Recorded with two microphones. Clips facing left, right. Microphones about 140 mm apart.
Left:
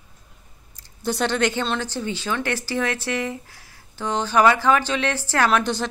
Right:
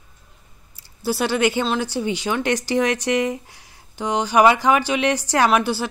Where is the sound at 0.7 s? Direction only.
10° right (ahead or behind).